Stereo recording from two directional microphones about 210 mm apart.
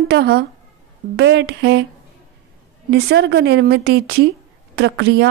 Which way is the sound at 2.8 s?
50° right (ahead or behind).